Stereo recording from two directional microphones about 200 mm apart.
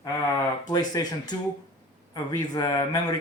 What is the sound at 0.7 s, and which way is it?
Speech, 20° left (ahead or behind).